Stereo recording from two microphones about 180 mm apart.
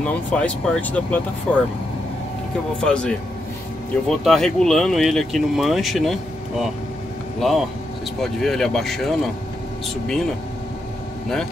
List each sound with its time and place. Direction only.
0.0 s speech: 5° left (ahead or behind)
2.8 s speech: 5° left (ahead or behind)